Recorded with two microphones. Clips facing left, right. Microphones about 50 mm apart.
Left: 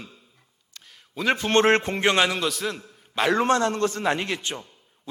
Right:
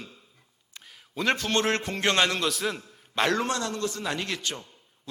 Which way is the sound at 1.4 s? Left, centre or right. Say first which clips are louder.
Left 7 dB; left.